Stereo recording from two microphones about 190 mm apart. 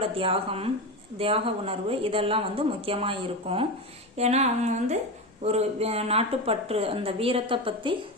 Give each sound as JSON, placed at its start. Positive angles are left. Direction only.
{"t": 0.0, "sound": "speech", "side_deg": -30}